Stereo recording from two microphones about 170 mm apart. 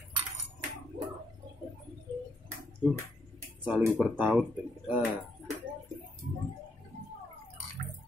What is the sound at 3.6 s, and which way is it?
Speech, 10° right (ahead or behind).